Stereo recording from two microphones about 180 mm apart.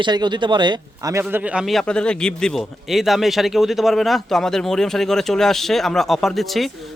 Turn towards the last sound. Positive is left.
turn(degrees=0)  # may be behind; listen again after turning